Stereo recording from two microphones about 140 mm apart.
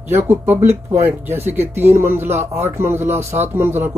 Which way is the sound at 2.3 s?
50° right (ahead or behind).